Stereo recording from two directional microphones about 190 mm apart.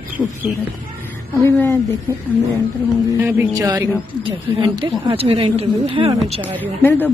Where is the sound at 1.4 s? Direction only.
15° left (ahead or behind).